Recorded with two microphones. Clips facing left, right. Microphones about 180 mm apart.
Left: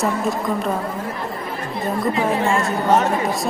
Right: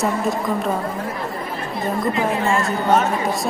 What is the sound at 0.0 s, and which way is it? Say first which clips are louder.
Speech: even; centre (ahead or behind).